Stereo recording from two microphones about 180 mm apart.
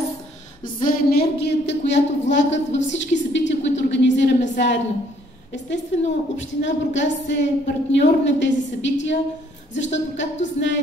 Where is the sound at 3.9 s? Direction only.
90° left.